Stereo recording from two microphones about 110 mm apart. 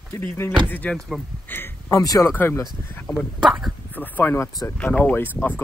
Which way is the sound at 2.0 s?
30° left (ahead or behind).